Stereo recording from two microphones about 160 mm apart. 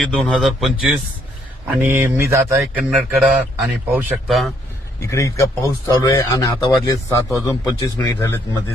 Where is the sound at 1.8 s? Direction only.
15° right (ahead or behind).